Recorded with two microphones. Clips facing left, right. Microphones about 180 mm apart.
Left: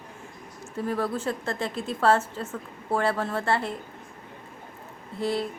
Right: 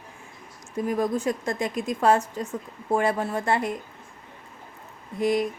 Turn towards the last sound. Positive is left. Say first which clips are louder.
# right 4 dB
turn(degrees=-15)  # may be behind; listen again after turning